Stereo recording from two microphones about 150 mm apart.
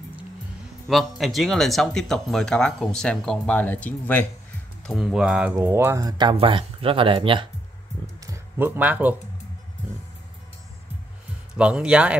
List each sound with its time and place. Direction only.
0.8 s speech: centre (ahead or behind)
4.8 s speech: 5° right (ahead or behind)
5.9 s speech: 30° right (ahead or behind)
8.2 s a sound: 20° right (ahead or behind)
11.5 s speech: 5° right (ahead or behind)